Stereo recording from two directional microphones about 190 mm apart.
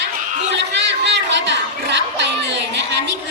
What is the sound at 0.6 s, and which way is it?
Chatter, 65° right (ahead or behind).